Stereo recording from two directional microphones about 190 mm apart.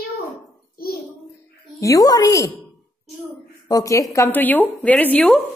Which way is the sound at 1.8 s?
20° left (ahead or behind).